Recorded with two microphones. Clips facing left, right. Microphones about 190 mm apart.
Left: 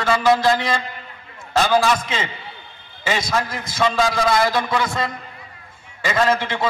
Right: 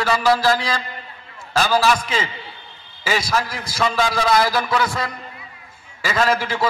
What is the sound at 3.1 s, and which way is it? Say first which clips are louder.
A man's voice: right 1 dB; 25° left (ahead or behind).